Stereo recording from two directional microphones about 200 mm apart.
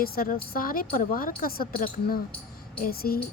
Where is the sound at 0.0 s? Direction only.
50° left (ahead or behind).